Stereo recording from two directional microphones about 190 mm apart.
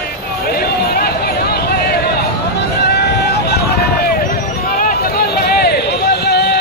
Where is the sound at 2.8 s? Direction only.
60° left (ahead or behind).